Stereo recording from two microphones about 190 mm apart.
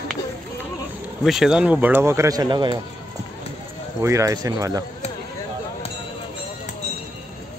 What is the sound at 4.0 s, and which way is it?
Speech, 15° right (ahead or behind).